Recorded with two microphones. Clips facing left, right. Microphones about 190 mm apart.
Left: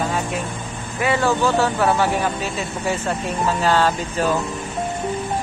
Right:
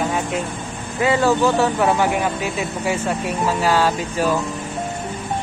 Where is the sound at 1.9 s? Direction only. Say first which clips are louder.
Right 1 dB; 15° right (ahead or behind).